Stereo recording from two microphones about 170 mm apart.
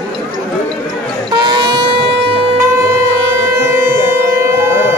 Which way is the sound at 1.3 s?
25° right (ahead or behind).